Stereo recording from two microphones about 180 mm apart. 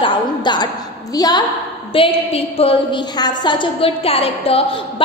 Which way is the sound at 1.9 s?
30° left (ahead or behind).